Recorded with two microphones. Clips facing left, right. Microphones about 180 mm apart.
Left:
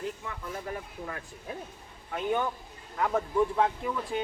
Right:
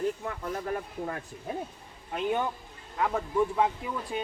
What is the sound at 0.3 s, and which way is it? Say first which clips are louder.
Speech: right 4 dB; 45° right (ahead or behind).